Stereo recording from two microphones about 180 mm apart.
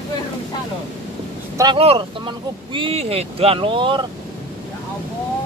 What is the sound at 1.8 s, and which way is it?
Speech, 30° right (ahead or behind).